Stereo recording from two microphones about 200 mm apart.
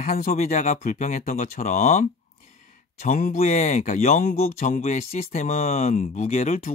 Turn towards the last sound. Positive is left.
turn(degrees=35)  # may be behind; listen again after turning